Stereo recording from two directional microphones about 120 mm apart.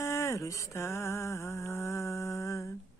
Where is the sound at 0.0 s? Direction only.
25° left (ahead or behind).